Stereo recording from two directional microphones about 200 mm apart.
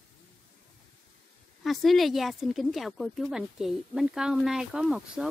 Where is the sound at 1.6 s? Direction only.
Centre (ahead or behind).